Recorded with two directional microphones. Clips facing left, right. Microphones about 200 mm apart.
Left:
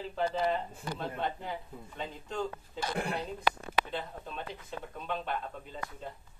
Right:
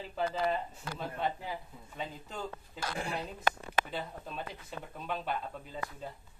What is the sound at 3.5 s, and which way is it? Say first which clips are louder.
Speech: even; 50° right (ahead or behind).